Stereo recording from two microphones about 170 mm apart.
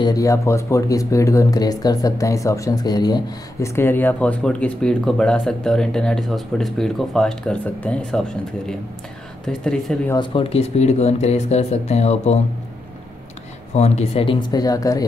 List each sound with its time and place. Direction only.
0.0 s speech: 20° left (ahead or behind); by 10.1 s 5° left (ahead or behind)
10.1 s speech: 30° left (ahead or behind)
13.7 s speech: 40° left (ahead or behind); by 15.0 s 20° left (ahead or behind)